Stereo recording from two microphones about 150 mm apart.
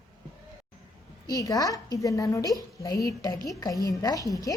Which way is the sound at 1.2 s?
25° left (ahead or behind).